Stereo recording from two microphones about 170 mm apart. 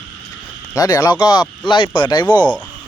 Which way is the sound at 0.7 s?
20° left (ahead or behind).